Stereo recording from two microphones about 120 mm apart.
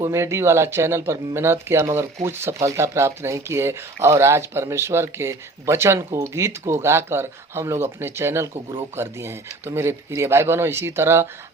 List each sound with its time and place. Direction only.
0.0 s speech: 25° right (ahead or behind)